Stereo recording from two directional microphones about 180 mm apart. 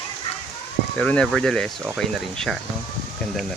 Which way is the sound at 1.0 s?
5° left (ahead or behind).